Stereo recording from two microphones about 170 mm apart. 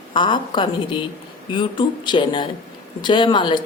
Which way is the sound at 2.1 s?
30° left (ahead or behind).